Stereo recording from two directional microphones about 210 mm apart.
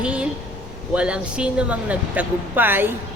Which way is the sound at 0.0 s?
5° right (ahead or behind).